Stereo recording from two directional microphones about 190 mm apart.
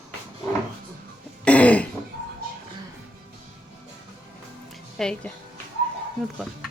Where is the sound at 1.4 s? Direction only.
5° left (ahead or behind).